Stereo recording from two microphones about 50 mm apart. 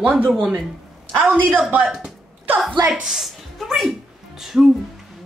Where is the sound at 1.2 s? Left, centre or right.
Right.